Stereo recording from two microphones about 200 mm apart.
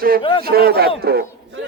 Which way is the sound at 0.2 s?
25° left (ahead or behind).